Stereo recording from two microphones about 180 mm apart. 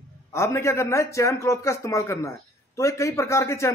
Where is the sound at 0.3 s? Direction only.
15° left (ahead or behind).